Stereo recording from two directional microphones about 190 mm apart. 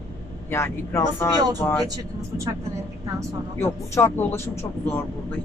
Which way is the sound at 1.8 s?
15° right (ahead or behind).